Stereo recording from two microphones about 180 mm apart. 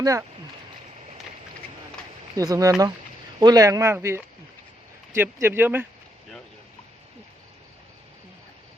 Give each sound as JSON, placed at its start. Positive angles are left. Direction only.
{"t": 0.0, "sound": "speech", "side_deg": -20}
{"t": 2.3, "sound": "speech", "side_deg": -20}